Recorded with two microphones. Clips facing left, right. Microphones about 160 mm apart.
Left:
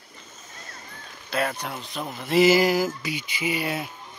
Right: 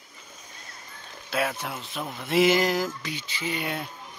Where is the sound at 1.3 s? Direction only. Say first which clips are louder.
Left 1 dB; 5° right (ahead or behind).